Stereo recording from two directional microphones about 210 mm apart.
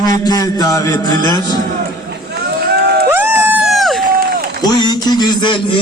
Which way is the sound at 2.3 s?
50° right (ahead or behind).